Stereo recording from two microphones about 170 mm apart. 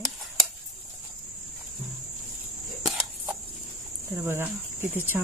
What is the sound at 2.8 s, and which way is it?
Camera, centre (ahead or behind).